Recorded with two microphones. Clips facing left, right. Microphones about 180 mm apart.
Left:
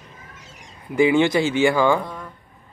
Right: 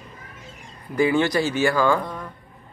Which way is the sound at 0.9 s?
20° left (ahead or behind).